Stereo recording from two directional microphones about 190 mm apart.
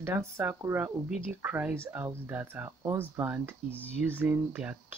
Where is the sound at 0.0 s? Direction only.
15° right (ahead or behind).